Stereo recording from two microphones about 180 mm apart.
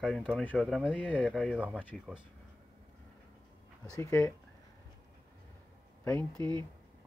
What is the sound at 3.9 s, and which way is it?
Speech, 15° left (ahead or behind).